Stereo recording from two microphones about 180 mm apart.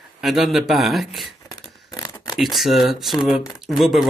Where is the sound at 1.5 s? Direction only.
20° left (ahead or behind).